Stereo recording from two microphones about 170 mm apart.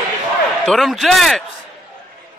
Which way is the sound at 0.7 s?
Centre (ahead or behind).